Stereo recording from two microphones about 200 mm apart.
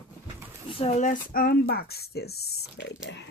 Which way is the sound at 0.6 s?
30° left (ahead or behind).